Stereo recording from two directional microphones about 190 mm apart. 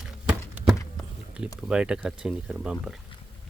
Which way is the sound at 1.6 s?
5° right (ahead or behind).